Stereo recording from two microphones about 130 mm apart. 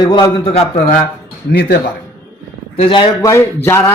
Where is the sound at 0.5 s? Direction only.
65° left (ahead or behind).